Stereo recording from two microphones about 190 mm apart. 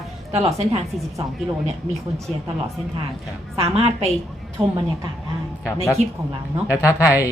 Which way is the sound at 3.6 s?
30° right (ahead or behind).